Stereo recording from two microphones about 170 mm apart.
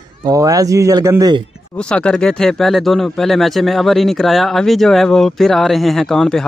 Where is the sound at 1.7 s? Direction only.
5° left (ahead or behind).